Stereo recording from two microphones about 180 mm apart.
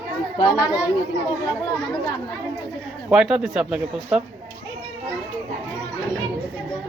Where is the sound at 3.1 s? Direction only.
5° right (ahead or behind).